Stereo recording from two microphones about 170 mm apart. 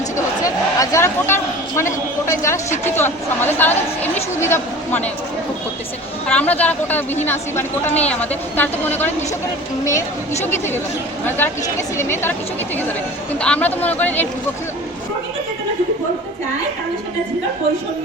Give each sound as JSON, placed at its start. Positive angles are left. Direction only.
{"t": 0.4, "sound": "a sound", "side_deg": 20}
{"t": 2.9, "sound": "a woman's voice", "side_deg": 15}
{"t": 6.2, "sound": "a woman's voice", "side_deg": 10}
{"t": 10.4, "sound": "a woman's voice", "side_deg": 15}
{"t": 13.4, "sound": "a woman's voice", "side_deg": 10}